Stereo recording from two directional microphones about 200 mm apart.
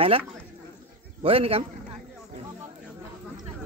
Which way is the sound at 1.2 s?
30° right (ahead or behind).